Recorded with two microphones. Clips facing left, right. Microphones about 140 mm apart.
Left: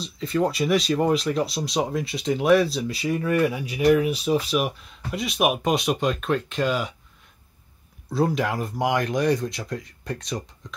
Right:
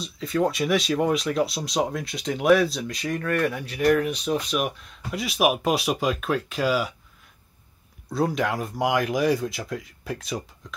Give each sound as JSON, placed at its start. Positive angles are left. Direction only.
{"t": 0.0, "sound": "speech", "side_deg": 0}
{"t": 8.1, "sound": "speech", "side_deg": 0}